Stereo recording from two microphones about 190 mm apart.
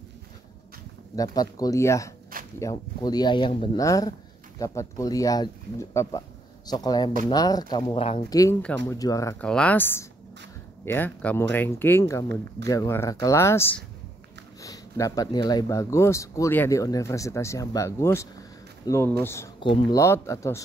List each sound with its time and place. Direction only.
1.1 s speech: 20° left (ahead or behind)
8.3 s speech: 20° left (ahead or behind)
10.9 s speech: 10° left (ahead or behind)
19.6 s speech: 25° left (ahead or behind)
20.0 s speech: 15° left (ahead or behind)